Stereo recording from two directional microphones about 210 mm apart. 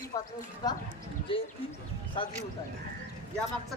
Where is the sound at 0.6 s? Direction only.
20° left (ahead or behind).